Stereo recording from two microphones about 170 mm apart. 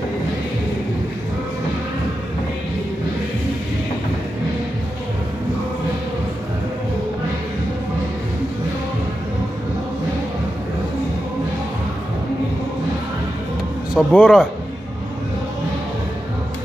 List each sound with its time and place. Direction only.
13.9 s speech: 5° left (ahead or behind)